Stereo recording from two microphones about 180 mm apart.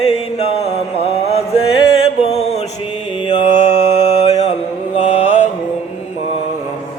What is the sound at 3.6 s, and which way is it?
Mantra, 40° left (ahead or behind).